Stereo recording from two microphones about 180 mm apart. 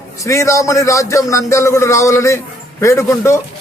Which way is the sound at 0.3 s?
15° left (ahead or behind).